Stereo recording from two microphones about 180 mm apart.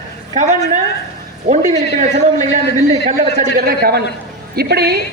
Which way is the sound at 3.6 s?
60° right (ahead or behind).